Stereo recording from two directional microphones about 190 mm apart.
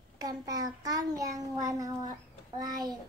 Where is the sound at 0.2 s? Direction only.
20° right (ahead or behind).